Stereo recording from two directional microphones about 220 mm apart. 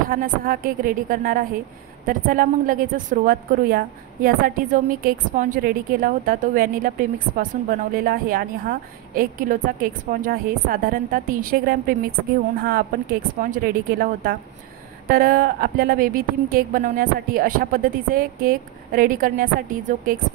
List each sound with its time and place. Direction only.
0.1 s speech: 40° right (ahead or behind)
13.4 s speech: 40° right (ahead or behind)